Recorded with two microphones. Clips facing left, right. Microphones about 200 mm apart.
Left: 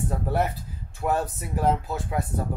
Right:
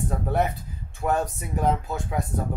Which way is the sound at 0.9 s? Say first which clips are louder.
Right 1 dB; centre (ahead or behind).